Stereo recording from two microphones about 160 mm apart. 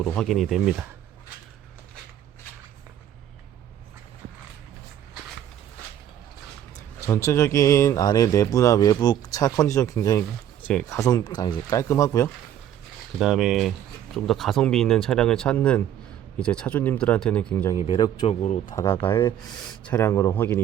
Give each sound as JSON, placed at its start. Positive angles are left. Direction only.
{"t": 0.0, "sound": "speech", "side_deg": 5}
{"t": 7.0, "sound": "speech", "side_deg": 15}
{"t": 13.1, "sound": "speech", "side_deg": -5}
{"t": 17.8, "sound": "speech", "side_deg": 30}
{"t": 18.7, "sound": "speech", "side_deg": 15}